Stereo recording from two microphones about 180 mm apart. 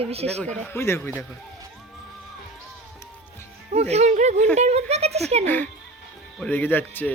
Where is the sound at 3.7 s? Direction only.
40° right (ahead or behind).